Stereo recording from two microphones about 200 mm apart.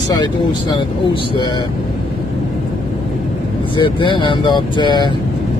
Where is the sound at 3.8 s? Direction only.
25° left (ahead or behind).